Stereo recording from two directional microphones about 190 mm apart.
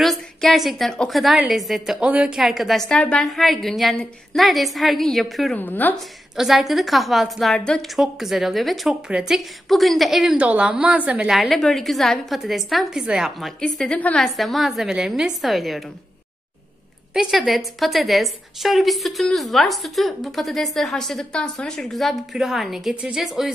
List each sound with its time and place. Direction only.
0.0 s a woman's voice: centre (ahead or behind)
6.3 s a woman's voice: centre (ahead or behind)
17.1 s a woman's voice: centre (ahead or behind)